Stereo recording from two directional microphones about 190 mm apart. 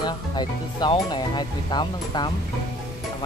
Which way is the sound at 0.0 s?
20° left (ahead or behind).